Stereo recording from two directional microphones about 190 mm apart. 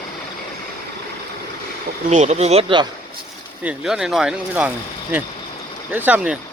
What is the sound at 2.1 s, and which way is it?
Speech, 35° right (ahead or behind).